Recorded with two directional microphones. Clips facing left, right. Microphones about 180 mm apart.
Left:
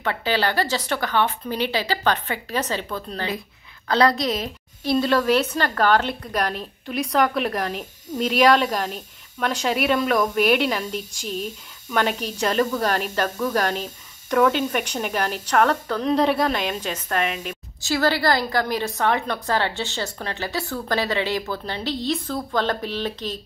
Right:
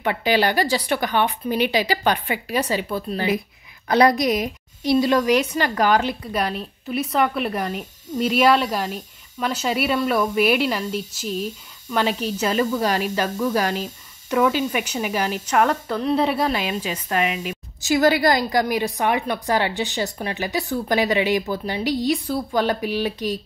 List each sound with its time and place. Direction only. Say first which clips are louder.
0.0 s a woman's voice: right 3 dB; 15° right (ahead or behind)
17.8 s a woman's voice: right 4 dB; 20° right (ahead or behind)